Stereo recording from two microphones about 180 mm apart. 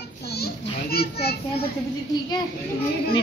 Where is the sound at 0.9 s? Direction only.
60° left (ahead or behind).